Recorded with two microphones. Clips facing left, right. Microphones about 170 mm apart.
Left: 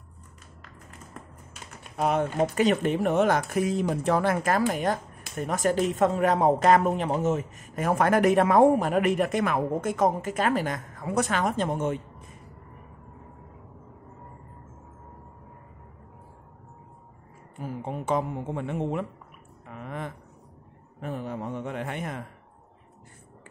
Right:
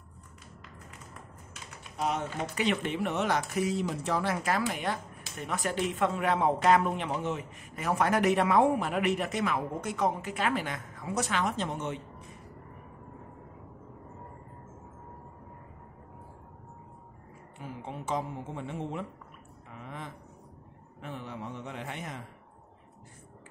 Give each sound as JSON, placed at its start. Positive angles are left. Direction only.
{"t": 2.0, "sound": "a woman's voice", "side_deg": 55}
{"t": 2.5, "sound": "speech", "side_deg": 45}
{"t": 17.6, "sound": "a woman's voice", "side_deg": 50}
{"t": 21.0, "sound": "speech", "side_deg": 45}